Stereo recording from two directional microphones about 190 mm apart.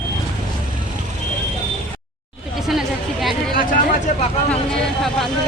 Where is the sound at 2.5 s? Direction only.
Centre (ahead or behind).